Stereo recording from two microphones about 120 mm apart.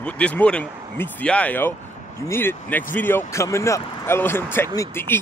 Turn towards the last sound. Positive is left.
turn(degrees=20)  # may be behind; listen again after turning